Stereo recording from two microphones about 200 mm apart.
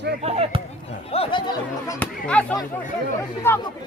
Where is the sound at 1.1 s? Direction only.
25° left (ahead or behind).